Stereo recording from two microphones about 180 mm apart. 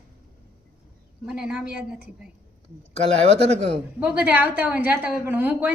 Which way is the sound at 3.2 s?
35° right (ahead or behind).